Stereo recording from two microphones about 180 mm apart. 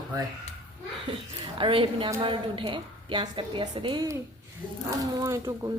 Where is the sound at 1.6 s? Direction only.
30° right (ahead or behind).